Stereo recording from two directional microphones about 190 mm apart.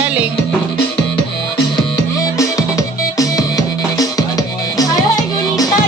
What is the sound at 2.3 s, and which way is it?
Music, 15° left (ahead or behind).